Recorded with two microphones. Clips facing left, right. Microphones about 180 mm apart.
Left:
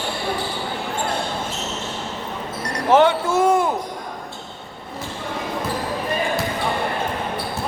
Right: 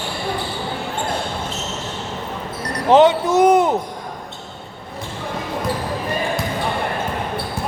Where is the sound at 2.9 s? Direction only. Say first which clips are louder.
Right 3 dB; 20° right (ahead or behind).